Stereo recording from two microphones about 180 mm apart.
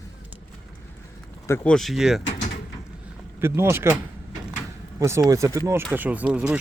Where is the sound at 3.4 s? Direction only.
15° right (ahead or behind).